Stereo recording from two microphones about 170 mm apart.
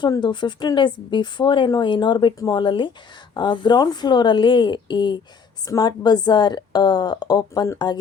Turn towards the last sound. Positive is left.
turn(degrees=20)  # may be behind; listen again after turning